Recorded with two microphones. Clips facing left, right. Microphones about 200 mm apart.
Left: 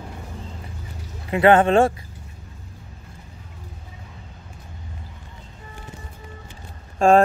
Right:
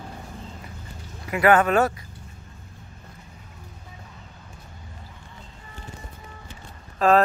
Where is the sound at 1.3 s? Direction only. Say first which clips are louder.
Left 3 dB; 25° left (ahead or behind).